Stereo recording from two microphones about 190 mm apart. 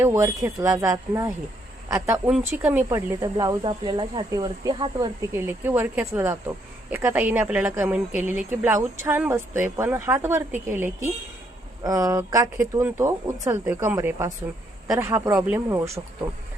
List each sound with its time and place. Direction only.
0.0 s speech: 15° right (ahead or behind)